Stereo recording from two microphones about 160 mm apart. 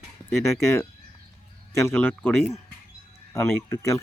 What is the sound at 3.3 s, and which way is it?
Speech, 20° left (ahead or behind).